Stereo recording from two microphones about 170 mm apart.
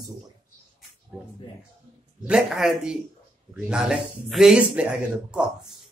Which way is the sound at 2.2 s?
5° right (ahead or behind).